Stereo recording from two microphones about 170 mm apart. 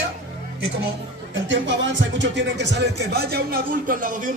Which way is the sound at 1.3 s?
90° right.